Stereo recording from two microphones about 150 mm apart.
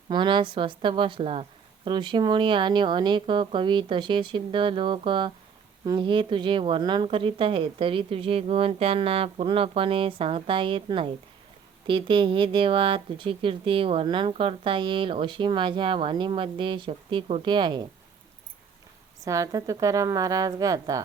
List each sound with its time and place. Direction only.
0.1 s speech: 30° right (ahead or behind)
19.2 s a woman's voice: 20° right (ahead or behind)